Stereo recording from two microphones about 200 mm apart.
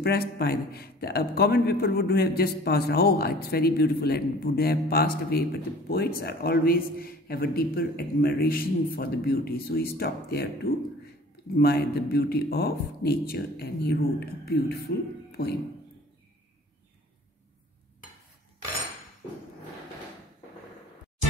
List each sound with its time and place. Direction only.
0.0 s a man's voice: 55° left (ahead or behind)